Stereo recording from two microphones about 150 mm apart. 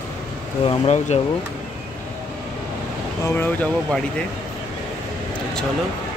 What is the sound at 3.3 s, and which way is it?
Speech, 15° left (ahead or behind).